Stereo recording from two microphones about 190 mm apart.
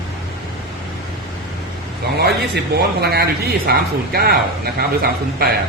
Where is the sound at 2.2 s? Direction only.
60° right (ahead or behind).